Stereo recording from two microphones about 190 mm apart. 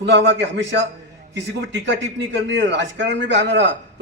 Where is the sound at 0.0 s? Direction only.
70° right (ahead or behind).